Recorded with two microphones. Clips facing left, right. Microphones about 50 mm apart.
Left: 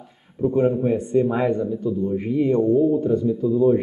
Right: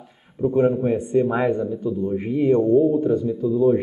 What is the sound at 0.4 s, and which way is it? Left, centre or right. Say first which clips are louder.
A man's voice: right 1 dB; centre.